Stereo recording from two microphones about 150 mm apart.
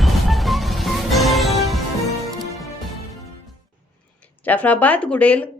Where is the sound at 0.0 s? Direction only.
Centre (ahead or behind).